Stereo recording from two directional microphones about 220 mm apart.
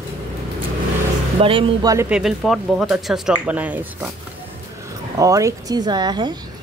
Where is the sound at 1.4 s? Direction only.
25° right (ahead or behind).